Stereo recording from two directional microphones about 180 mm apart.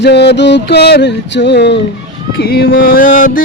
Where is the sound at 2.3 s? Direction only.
60° left (ahead or behind).